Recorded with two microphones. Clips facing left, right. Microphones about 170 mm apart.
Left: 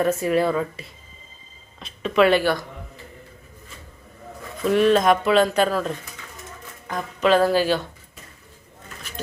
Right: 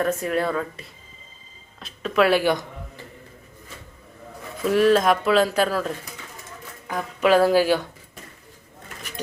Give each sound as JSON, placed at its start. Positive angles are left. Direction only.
{"t": 0.0, "sound": "speech", "side_deg": 5}
{"t": 2.4, "sound": "speech", "side_deg": -15}
{"t": 4.6, "sound": "speech", "side_deg": -5}